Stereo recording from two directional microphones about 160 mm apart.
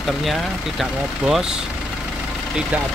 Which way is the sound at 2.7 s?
10° right (ahead or behind).